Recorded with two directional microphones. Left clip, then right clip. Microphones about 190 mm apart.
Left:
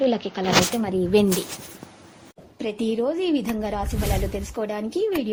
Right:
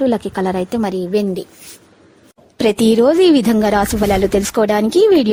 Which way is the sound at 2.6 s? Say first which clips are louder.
Right 13 dB; 70° right (ahead or behind).